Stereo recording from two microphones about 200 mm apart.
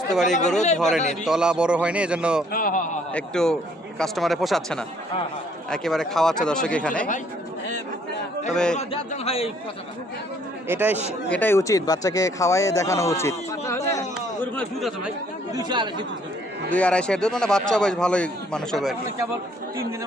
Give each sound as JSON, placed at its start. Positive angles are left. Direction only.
{"t": 0.3, "sound": "speech", "side_deg": 35}
{"t": 0.8, "sound": "speech", "side_deg": 0}
{"t": 2.5, "sound": "a man's voice", "side_deg": 45}
{"t": 3.1, "sound": "speech", "side_deg": 5}
{"t": 8.5, "sound": "speech", "side_deg": 5}
{"t": 8.8, "sound": "speech", "side_deg": 30}
{"t": 10.7, "sound": "speech", "side_deg": -10}
{"t": 11.3, "sound": "speech", "side_deg": 10}
{"t": 15.5, "sound": "speech", "side_deg": -20}
{"t": 16.6, "sound": "speech", "side_deg": 5}